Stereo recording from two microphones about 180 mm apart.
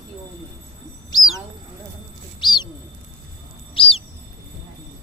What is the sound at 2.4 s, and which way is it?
Bird, 25° left (ahead or behind).